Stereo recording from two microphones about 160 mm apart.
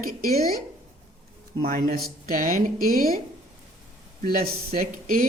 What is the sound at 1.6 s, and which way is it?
Speech, 70° right (ahead or behind).